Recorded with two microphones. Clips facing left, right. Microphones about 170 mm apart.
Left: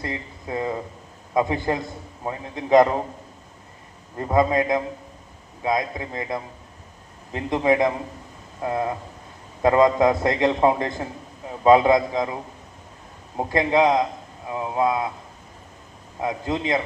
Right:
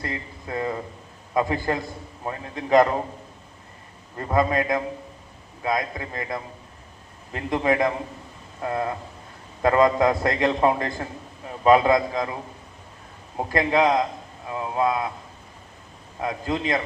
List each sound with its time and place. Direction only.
0.0 s a man's voice: 20° left (ahead or behind)
4.2 s a man's voice: 20° left (ahead or behind)
16.2 s a man's voice: 20° left (ahead or behind)